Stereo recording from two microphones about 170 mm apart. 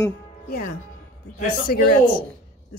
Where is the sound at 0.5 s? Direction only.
60° left (ahead or behind).